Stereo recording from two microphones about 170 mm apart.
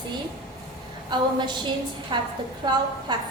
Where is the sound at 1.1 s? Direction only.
25° right (ahead or behind).